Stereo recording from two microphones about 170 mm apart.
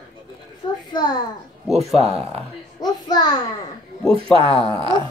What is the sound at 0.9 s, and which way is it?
Speech, 25° left (ahead or behind).